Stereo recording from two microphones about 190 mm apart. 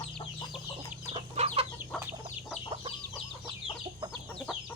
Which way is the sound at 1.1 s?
35° right (ahead or behind).